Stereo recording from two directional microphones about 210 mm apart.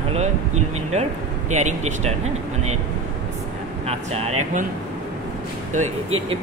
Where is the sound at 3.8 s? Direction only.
30° right (ahead or behind).